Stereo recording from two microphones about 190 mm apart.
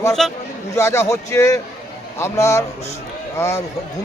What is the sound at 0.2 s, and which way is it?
Speech, centre (ahead or behind).